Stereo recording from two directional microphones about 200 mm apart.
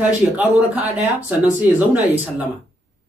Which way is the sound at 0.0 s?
10° right (ahead or behind).